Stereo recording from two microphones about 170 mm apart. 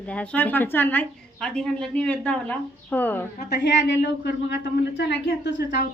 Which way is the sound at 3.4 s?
80° left.